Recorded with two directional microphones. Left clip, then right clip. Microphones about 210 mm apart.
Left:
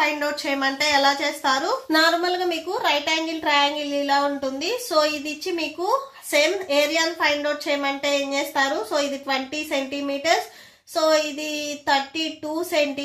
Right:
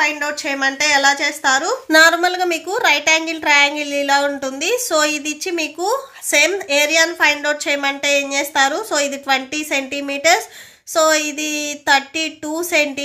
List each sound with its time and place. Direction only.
0.0 s a woman's voice: 25° right (ahead or behind); by 12.8 s 45° right (ahead or behind)